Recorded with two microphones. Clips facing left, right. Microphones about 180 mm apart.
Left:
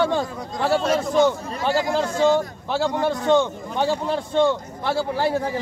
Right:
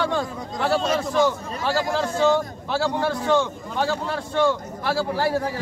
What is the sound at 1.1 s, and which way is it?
A man's voice, 20° left (ahead or behind).